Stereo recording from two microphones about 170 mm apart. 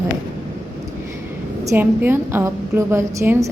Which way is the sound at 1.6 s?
10° right (ahead or behind).